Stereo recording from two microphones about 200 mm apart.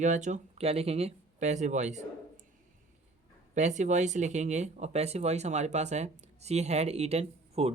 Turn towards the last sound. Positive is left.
turn(degrees=-30)  # may be behind; listen again after turning